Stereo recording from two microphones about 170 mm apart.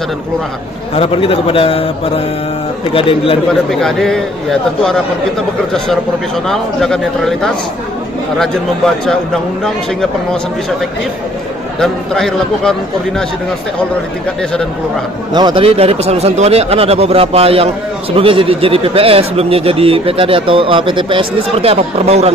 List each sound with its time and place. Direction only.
0.9 s speech: 35° left (ahead or behind)
3.8 s speech: centre (ahead or behind)
6.4 s speech: centre (ahead or behind)
11.8 s speech: 5° left (ahead or behind)
15.3 s a man's voice: 30° right (ahead or behind)